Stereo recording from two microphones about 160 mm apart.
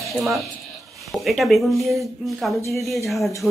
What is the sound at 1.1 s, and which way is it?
A woman's voice, centre (ahead or behind).